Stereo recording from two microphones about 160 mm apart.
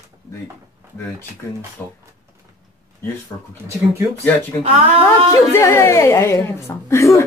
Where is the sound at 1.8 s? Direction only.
10° left (ahead or behind).